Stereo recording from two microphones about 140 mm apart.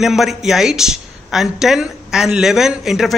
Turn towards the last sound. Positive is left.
turn(degrees=-5)  # may be behind; listen again after turning